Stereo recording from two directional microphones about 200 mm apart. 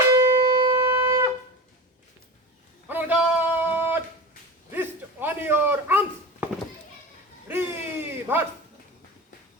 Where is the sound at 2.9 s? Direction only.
10° right (ahead or behind).